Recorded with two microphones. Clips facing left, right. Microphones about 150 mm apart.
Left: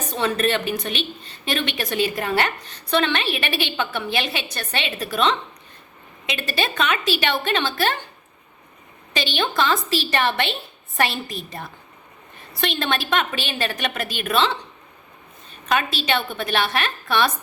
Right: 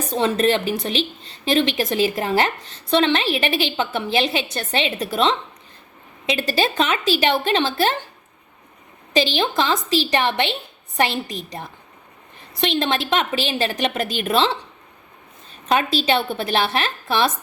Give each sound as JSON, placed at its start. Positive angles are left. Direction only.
{"t": 0.1, "sound": "a woman's voice", "side_deg": -30}
{"t": 9.1, "sound": "a woman's voice", "side_deg": -30}
{"t": 15.7, "sound": "a woman's voice", "side_deg": -30}